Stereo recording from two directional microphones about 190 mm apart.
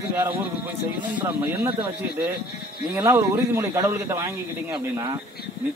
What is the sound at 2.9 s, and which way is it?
A man's voice, 15° right (ahead or behind).